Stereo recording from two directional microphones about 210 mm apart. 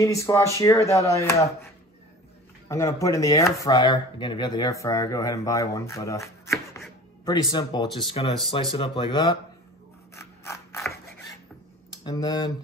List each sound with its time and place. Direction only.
0.0 s speech: 15° left (ahead or behind)
2.7 s speech: 15° left (ahead or behind)
10.1 s scissors: 15° left (ahead or behind)
12.0 s speech: 20° left (ahead or behind)